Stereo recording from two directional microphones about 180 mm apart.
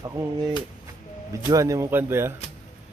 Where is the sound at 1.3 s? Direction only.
15° right (ahead or behind).